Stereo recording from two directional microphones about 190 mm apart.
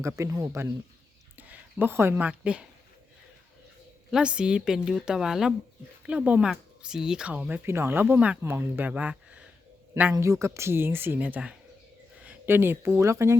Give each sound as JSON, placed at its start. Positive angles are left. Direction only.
{"t": 0.0, "sound": "speech", "side_deg": -15}
{"t": 4.1, "sound": "a woman's voice", "side_deg": -5}